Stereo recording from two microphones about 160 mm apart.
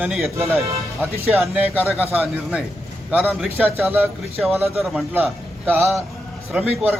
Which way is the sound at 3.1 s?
5° right (ahead or behind).